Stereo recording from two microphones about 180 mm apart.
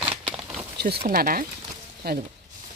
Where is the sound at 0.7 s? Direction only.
60° right (ahead or behind).